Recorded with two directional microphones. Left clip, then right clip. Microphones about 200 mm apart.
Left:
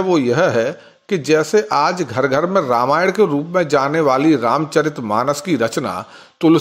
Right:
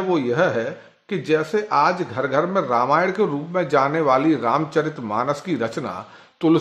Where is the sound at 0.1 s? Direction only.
35° left (ahead or behind).